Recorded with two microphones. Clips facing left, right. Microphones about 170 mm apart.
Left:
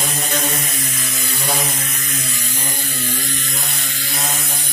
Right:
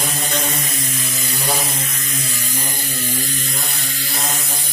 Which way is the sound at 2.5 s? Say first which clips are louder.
Right 1 dB; 40° right (ahead or behind).